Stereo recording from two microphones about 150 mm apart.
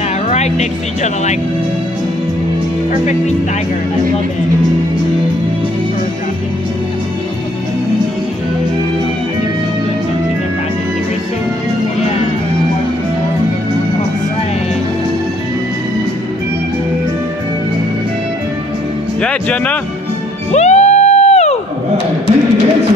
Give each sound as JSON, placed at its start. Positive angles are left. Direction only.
{"t": 0.3, "sound": "speech", "side_deg": 50}
{"t": 2.9, "sound": "speech", "side_deg": 50}
{"t": 19.2, "sound": "speech", "side_deg": 10}
{"t": 20.5, "sound": "music", "side_deg": 50}